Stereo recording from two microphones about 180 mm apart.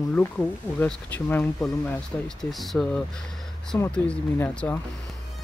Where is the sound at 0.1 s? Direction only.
10° left (ahead or behind).